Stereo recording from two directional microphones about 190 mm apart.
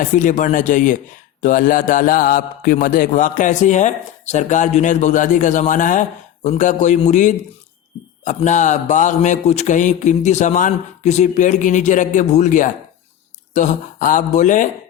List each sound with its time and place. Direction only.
0.0 s a man's voice: 40° left (ahead or behind)